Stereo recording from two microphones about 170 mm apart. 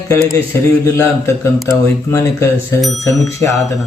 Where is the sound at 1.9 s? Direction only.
20° left (ahead or behind).